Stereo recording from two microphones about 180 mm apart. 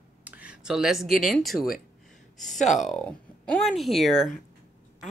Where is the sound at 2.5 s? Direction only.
40° left (ahead or behind).